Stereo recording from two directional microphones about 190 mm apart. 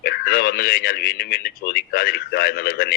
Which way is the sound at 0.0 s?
55° left (ahead or behind).